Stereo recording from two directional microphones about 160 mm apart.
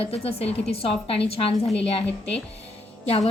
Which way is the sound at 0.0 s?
35° left (ahead or behind).